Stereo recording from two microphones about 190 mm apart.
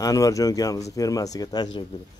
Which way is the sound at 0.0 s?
20° left (ahead or behind).